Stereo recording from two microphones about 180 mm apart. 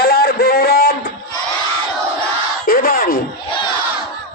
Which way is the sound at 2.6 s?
55° left (ahead or behind).